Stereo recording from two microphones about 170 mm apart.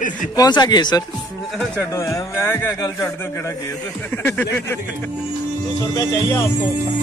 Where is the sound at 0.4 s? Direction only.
25° left (ahead or behind).